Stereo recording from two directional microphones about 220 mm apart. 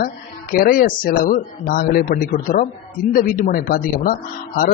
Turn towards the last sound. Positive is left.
turn(degrees=40)  # may be behind; listen again after turning